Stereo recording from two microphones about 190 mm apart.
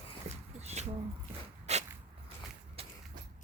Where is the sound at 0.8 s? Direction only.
35° right (ahead or behind).